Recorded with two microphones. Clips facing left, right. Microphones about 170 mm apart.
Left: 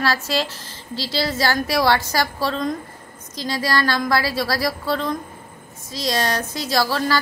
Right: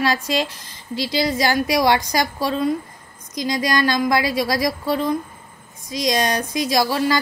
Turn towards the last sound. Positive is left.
turn(degrees=-15)  # may be behind; listen again after turning